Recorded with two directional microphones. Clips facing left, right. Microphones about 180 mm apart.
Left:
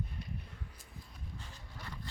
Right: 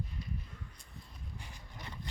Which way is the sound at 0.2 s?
65° left (ahead or behind).